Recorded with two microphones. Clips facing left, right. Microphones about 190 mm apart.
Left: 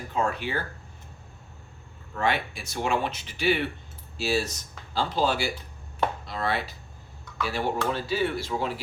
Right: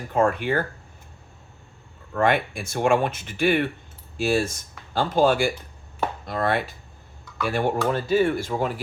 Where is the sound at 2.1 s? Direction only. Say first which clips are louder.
Right 6 dB; 50° right (ahead or behind).